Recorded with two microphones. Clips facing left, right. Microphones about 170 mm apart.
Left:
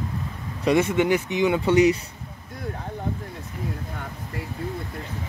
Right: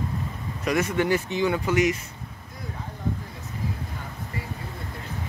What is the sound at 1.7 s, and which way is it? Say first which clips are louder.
Speech: left 7 dB; 30° left (ahead or behind).